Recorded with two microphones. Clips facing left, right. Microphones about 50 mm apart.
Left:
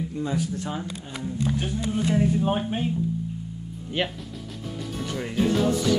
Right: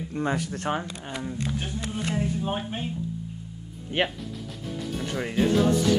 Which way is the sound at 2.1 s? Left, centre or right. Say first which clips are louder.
Left 5 dB; centre.